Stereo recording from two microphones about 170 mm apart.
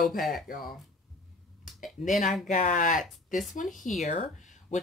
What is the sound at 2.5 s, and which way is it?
Speech, 50° left (ahead or behind).